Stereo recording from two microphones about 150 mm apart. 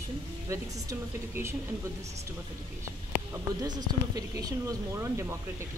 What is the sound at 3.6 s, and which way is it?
Speech, 30° right (ahead or behind).